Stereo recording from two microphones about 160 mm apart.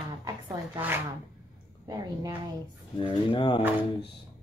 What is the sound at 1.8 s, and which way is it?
Speech, 25° right (ahead or behind).